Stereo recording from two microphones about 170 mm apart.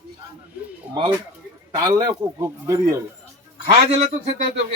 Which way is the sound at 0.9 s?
10° right (ahead or behind).